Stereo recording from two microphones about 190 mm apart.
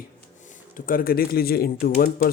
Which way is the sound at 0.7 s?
45° left (ahead or behind).